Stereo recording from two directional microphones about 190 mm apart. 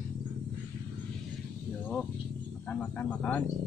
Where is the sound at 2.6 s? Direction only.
5° left (ahead or behind).